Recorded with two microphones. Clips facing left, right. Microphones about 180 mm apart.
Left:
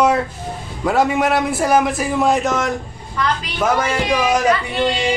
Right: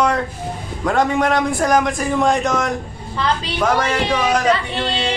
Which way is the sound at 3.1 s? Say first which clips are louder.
Even; 30° right (ahead or behind).